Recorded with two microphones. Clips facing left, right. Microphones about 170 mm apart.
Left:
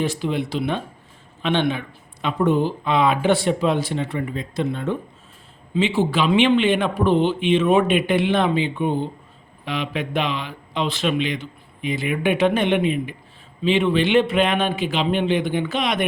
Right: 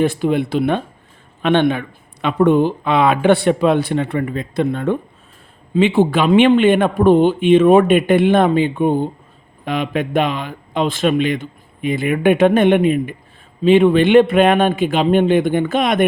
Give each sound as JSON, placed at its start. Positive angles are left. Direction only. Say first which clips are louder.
{"t": 0.0, "sound": "speech", "louder": "right 7 dB", "side_deg": -55}